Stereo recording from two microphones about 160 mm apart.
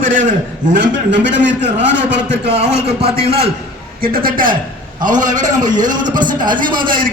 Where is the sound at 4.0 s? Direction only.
65° right (ahead or behind).